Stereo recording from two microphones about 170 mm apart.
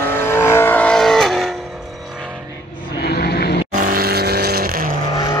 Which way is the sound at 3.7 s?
55° right (ahead or behind).